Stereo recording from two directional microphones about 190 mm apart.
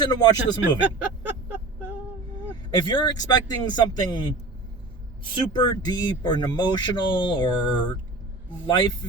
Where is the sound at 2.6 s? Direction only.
25° left (ahead or behind).